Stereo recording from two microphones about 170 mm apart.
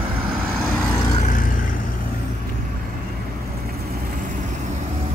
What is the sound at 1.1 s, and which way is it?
Vehicle, 50° left (ahead or behind).